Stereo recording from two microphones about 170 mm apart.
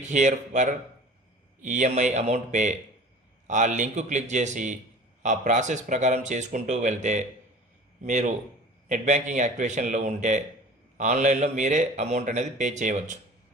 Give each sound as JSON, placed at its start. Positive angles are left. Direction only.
{"t": 0.0, "sound": "a man's voice", "side_deg": -45}